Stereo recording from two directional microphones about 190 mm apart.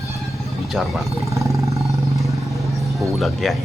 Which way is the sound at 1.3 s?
15° right (ahead or behind).